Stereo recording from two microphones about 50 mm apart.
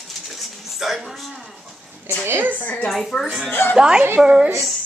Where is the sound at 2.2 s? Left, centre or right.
Right.